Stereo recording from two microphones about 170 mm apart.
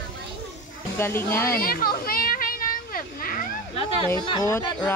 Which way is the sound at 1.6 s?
60° left (ahead or behind).